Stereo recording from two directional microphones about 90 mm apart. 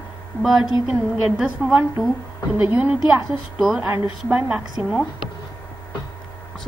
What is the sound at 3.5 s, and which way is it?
A woman's voice, 5° right (ahead or behind).